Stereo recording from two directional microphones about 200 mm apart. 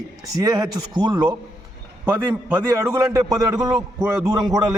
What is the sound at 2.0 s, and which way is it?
A man's voice, 10° right (ahead or behind).